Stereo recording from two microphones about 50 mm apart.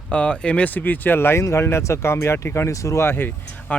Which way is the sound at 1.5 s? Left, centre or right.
Left.